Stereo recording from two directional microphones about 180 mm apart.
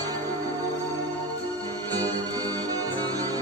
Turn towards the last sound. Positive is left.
turn(degrees=-20)  # may be behind; listen again after turning